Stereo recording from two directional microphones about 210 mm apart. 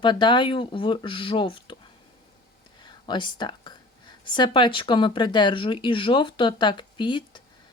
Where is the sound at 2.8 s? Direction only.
20° left (ahead or behind).